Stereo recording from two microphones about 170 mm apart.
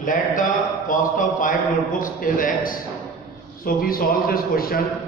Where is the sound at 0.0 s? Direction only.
50° left (ahead or behind).